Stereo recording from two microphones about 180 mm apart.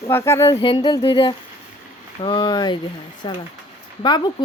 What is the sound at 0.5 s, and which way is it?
Speech, 30° left (ahead or behind).